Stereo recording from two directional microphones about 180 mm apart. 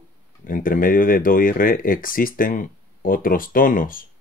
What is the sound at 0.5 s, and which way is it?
Speech, 50° left (ahead or behind).